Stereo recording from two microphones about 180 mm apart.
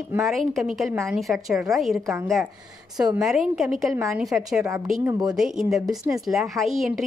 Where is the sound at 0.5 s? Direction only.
Centre (ahead or behind).